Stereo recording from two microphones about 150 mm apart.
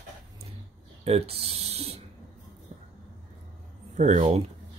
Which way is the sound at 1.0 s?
45° right (ahead or behind).